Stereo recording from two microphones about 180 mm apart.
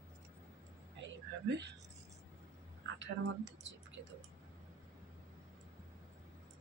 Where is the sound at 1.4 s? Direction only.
70° right (ahead or behind).